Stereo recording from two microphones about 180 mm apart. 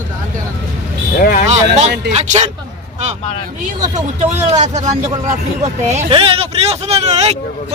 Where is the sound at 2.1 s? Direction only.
40° right (ahead or behind).